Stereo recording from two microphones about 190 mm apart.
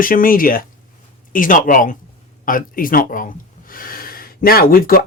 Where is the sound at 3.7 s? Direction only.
50° left (ahead or behind).